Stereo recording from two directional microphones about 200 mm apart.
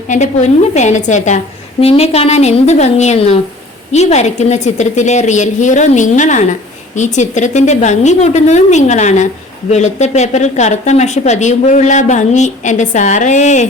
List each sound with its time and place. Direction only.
0.1 s a woman's voice: 35° left (ahead or behind)